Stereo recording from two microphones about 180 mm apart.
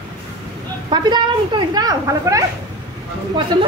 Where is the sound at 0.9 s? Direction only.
25° right (ahead or behind).